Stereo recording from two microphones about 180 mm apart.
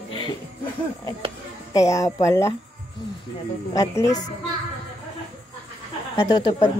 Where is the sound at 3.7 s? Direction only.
20° left (ahead or behind).